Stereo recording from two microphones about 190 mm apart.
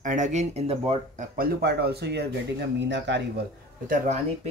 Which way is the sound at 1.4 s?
55° right (ahead or behind).